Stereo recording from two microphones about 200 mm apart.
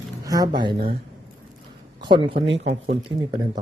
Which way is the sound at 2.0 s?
25° right (ahead or behind).